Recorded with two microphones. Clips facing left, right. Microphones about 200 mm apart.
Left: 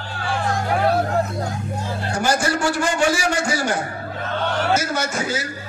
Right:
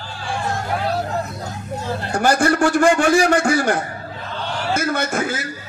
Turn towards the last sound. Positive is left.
turn(degrees=-55)  # may be behind; listen again after turning